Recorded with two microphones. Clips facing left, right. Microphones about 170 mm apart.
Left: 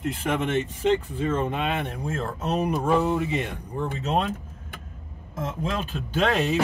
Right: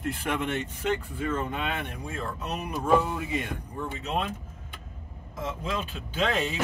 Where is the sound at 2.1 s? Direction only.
45° left (ahead or behind).